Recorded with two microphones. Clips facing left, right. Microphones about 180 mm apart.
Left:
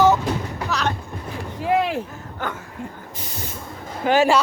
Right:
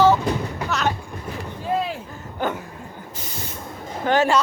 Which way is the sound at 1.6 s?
85° left.